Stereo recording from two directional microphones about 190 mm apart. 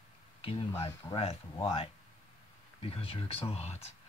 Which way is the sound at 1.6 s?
30° left (ahead or behind).